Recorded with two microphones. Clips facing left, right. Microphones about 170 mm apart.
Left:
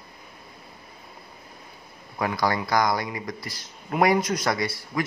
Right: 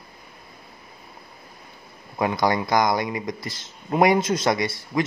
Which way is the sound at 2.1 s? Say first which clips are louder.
Right 3 dB; 20° right (ahead or behind).